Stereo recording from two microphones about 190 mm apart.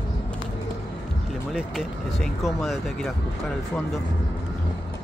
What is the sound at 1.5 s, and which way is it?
Speech, centre (ahead or behind).